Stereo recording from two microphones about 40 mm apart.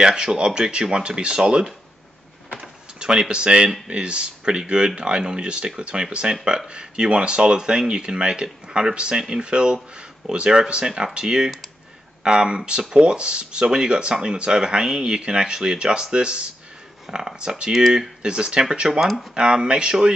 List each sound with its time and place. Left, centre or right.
0.0 s speech: centre
2.6 s a sound: centre
3.8 s speech: right
17.0 s speech: centre
19.3 s speech: right